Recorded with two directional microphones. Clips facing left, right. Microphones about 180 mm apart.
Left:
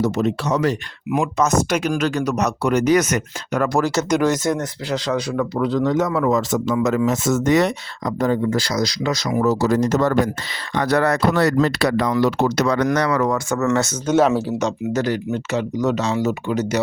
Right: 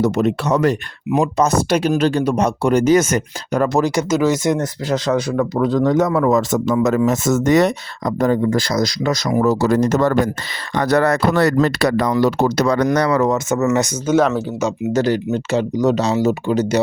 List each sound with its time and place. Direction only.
0.0 s speech: 60° right (ahead or behind)
1.1 s speech: 30° right (ahead or behind)
4.1 s speech: 5° right (ahead or behind)
4.5 s speech: 40° right (ahead or behind); by 13.7 s 20° right (ahead or behind)
14.1 s speech: centre (ahead or behind)
14.9 s speech: 30° right (ahead or behind)